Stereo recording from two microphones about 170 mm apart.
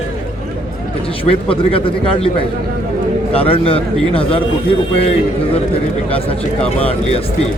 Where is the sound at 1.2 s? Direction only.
30° left (ahead or behind).